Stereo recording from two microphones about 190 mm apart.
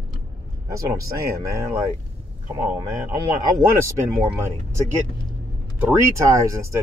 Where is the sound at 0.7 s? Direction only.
15° right (ahead or behind).